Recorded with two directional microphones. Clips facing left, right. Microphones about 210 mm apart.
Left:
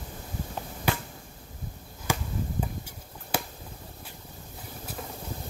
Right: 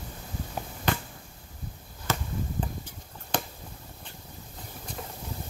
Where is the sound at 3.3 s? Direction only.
10° left (ahead or behind).